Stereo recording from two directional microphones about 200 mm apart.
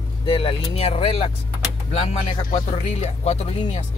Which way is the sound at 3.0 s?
35° left (ahead or behind).